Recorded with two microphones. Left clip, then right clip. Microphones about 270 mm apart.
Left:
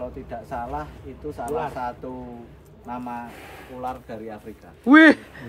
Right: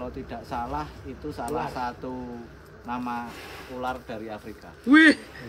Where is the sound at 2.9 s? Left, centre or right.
Centre.